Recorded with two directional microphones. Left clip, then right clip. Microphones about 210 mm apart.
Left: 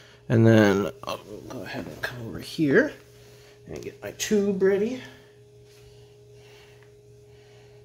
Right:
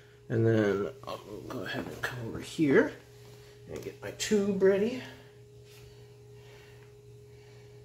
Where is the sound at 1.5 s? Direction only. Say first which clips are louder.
Left 1 dB; 15° left (ahead or behind).